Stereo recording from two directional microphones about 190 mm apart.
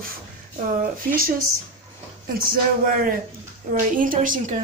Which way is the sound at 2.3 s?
50° right (ahead or behind).